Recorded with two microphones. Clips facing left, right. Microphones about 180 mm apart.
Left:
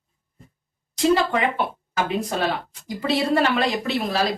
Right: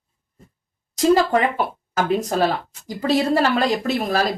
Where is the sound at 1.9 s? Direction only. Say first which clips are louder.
Right 4 dB; 45° right (ahead or behind).